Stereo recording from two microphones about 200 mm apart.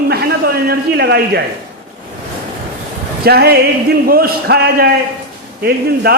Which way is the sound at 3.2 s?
50° right (ahead or behind).